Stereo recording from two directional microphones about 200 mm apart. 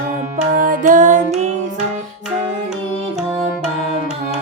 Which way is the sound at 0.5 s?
40° right (ahead or behind).